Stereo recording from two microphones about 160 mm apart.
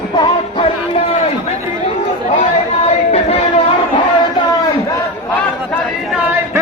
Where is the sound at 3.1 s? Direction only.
40° left (ahead or behind).